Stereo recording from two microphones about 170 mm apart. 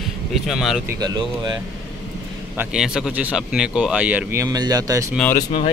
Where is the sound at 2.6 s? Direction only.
5° right (ahead or behind).